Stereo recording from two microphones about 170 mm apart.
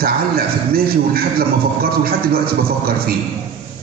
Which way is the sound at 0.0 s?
60° right (ahead or behind).